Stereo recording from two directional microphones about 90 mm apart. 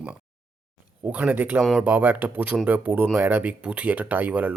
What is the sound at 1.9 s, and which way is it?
Speech, 20° right (ahead or behind).